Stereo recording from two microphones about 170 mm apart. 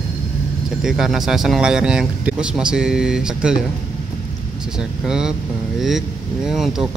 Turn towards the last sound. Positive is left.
turn(degrees=0)  # may be behind; listen again after turning